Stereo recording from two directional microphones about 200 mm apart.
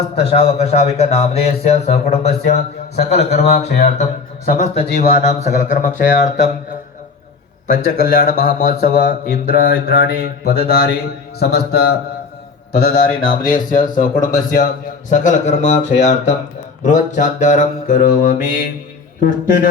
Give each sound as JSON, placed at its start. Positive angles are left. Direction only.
{"t": 0.2, "sound": "speech", "side_deg": 30}
{"t": 7.7, "sound": "speech", "side_deg": 45}